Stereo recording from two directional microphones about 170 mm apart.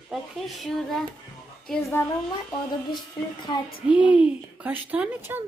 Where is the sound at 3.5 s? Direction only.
25° left (ahead or behind).